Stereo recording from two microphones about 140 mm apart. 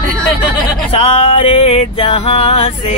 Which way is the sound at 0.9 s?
45° left (ahead or behind).